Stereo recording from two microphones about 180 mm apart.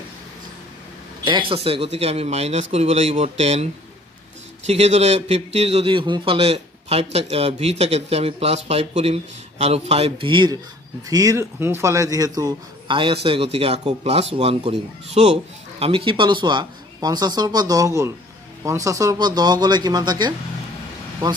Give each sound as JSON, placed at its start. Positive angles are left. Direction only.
{"t": 1.2, "sound": "a man's voice", "side_deg": -30}
{"t": 4.6, "sound": "a man's voice", "side_deg": -35}